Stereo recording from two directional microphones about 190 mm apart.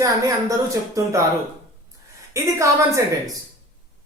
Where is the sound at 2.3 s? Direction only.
15° right (ahead or behind).